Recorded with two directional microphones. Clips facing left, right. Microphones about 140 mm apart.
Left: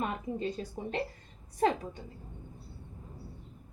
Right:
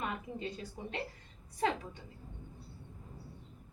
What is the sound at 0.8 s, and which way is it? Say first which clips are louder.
A woman's voice: left 6 dB; 45° left (ahead or behind).